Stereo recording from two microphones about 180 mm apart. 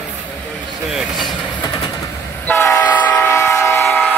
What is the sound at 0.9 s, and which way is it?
Vehicle, centre (ahead or behind).